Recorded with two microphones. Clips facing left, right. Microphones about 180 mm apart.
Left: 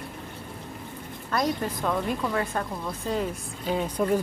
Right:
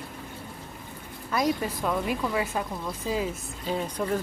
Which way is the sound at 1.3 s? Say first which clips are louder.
Even; 5° right (ahead or behind).